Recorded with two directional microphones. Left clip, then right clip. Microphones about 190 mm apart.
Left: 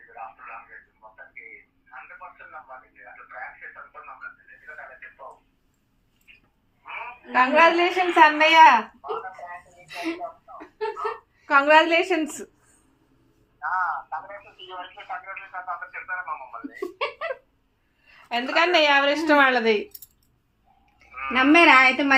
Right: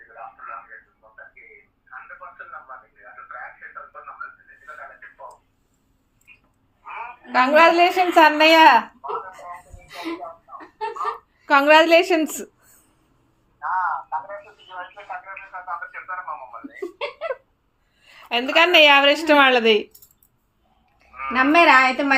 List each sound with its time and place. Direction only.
7.3 s a woman's voice: 50° right (ahead or behind)
11.4 s a woman's voice: 45° right (ahead or behind)
13.6 s a sound: centre (ahead or behind)
16.6 s giggle: 10° left (ahead or behind)
18.0 s a woman's voice: 40° right (ahead or behind)
21.0 s a woman's voice: centre (ahead or behind)